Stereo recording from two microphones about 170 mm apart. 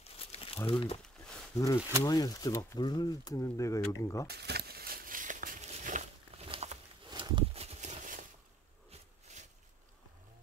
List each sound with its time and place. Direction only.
0.0 s crumpling: 35° left (ahead or behind)
0.7 s speech: 30° left (ahead or behind)
1.8 s speech: 15° right (ahead or behind)
2.0 s speech: 20° left (ahead or behind)
4.3 s a sound: 75° right (ahead or behind); by 9.5 s 45° right (ahead or behind)